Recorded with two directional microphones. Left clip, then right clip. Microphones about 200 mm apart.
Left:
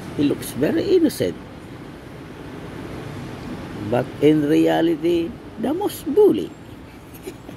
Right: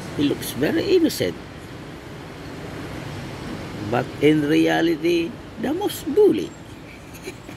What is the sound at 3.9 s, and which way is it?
Speech, 20° left (ahead or behind).